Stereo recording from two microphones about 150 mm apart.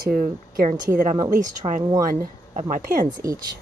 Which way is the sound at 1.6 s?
30° right (ahead or behind).